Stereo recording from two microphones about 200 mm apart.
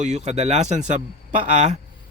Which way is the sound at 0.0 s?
35° right (ahead or behind).